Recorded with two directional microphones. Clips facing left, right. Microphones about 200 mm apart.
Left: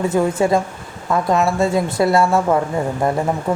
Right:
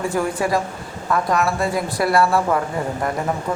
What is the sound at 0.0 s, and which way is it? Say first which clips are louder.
A man's voice: left 5 dB; 25° left (ahead or behind).